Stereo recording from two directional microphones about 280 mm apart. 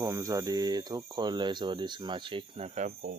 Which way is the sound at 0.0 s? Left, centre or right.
Centre.